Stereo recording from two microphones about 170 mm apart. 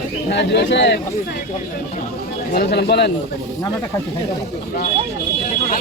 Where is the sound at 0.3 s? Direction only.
85° left.